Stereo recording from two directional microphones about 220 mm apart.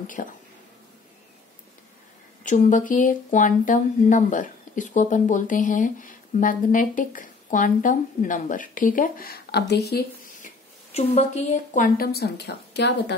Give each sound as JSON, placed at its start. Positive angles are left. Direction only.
{"t": 0.0, "sound": "speech", "side_deg": 35}
{"t": 2.4, "sound": "speech", "side_deg": 35}
{"t": 10.9, "sound": "speech", "side_deg": 30}